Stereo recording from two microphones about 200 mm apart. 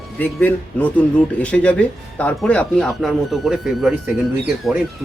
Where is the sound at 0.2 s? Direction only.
10° left (ahead or behind).